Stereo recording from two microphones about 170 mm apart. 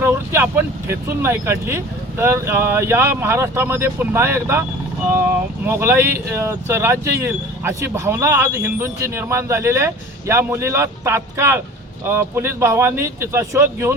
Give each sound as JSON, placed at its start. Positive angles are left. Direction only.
{"t": 0.0, "sound": "speech", "side_deg": -15}